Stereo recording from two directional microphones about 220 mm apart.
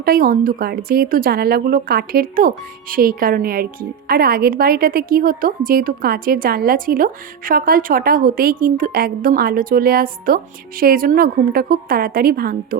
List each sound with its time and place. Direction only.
0.0 s speech: 40° right (ahead or behind)